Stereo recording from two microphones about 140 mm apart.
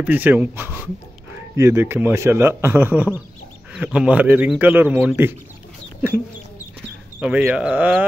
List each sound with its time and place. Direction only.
0.0 s a man's voice: 10° right (ahead or behind)
7.2 s a man's voice: 10° right (ahead or behind)